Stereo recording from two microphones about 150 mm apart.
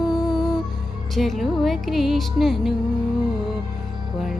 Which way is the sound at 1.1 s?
Centre (ahead or behind).